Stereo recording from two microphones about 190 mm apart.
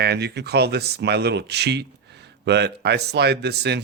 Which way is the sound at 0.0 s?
60° right (ahead or behind).